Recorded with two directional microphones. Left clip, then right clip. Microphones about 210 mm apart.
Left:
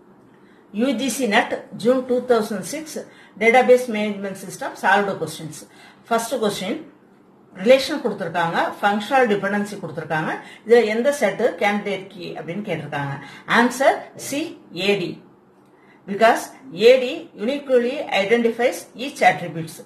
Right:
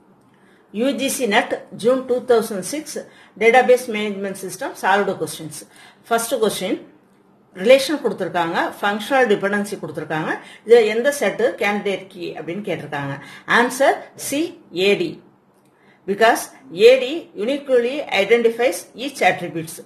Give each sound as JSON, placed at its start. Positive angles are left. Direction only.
{"t": 0.7, "sound": "a woman's voice", "side_deg": -50}
{"t": 6.0, "sound": "a woman's voice", "side_deg": -50}
{"t": 16.2, "sound": "a woman's voice", "side_deg": -50}